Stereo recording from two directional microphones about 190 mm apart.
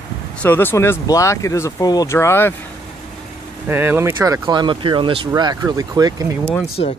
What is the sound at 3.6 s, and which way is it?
Speech, 10° right (ahead or behind).